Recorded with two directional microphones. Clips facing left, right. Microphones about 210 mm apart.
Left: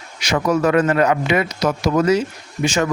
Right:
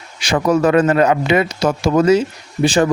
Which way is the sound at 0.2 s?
30° right (ahead or behind).